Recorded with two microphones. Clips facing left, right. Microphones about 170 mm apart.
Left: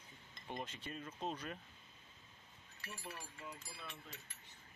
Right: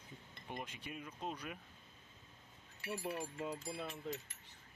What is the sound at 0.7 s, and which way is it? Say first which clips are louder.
Speech: even; 10° right (ahead or behind).